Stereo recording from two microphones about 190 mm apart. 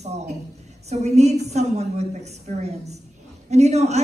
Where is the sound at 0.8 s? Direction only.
35° right (ahead or behind).